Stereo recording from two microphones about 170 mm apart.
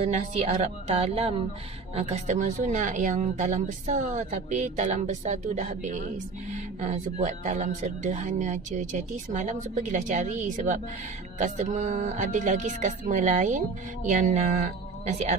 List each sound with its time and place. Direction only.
0.0 s speech: 40° right (ahead or behind)